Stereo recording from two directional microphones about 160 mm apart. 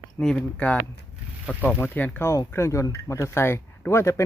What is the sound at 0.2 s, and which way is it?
Speech, 5° left (ahead or behind).